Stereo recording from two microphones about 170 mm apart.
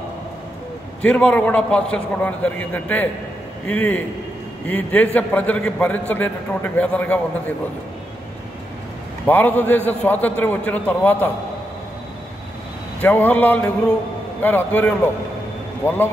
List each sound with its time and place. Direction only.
1.0 s a man's voice: 5° left (ahead or behind)
9.2 s a man's voice: 10° left (ahead or behind)
13.0 s a man's voice: 10° left (ahead or behind)